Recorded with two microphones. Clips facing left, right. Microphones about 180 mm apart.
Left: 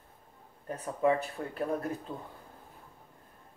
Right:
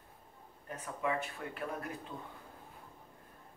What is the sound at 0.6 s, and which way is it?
Speech, 35° left (ahead or behind).